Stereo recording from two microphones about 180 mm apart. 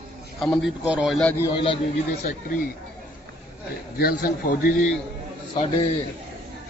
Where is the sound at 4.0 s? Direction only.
55° left (ahead or behind).